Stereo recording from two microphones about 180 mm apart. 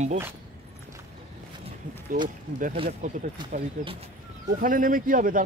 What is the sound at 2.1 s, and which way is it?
Speech, 55° right (ahead or behind).